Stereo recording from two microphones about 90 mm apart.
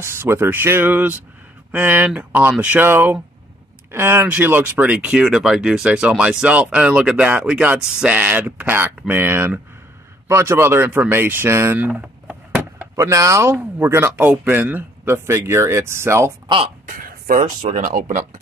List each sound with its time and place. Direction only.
0.0 s speech: 30° right (ahead or behind)
11.8 s a sound: 10° right (ahead or behind)
12.9 s speech: 35° right (ahead or behind)
16.4 s speech: 80° right